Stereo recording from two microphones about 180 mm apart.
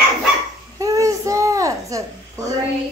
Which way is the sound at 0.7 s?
20° right (ahead or behind).